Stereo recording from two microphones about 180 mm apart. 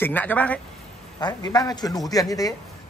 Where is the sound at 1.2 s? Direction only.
20° left (ahead or behind).